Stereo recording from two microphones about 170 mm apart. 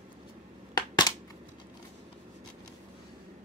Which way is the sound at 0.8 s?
25° left (ahead or behind).